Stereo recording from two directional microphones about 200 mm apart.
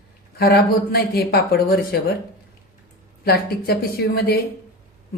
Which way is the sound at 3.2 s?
50° left (ahead or behind).